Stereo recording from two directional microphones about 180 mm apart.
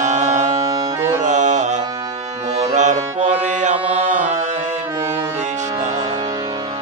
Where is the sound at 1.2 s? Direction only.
40° right (ahead or behind).